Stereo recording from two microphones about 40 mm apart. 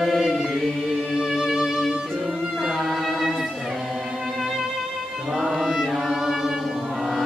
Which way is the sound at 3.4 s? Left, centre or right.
Centre.